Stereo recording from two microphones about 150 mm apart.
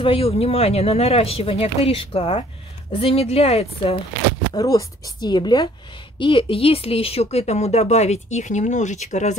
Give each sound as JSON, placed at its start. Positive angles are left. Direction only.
{"t": 0.0, "sound": "speech", "side_deg": 40}
{"t": 4.6, "sound": "speech", "side_deg": 25}